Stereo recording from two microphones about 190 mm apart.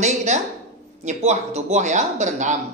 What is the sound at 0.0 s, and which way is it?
A woman's voice, 35° right (ahead or behind).